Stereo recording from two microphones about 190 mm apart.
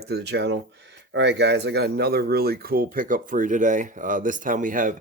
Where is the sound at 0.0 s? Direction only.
60° right (ahead or behind).